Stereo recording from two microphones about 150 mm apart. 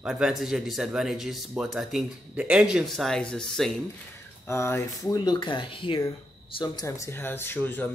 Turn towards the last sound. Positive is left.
turn(degrees=10)  # may be behind; listen again after turning